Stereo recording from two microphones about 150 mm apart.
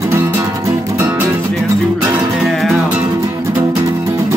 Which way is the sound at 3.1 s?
20° right (ahead or behind).